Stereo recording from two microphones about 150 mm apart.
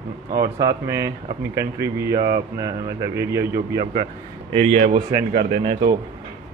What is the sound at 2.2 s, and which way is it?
Mantra, 80° right.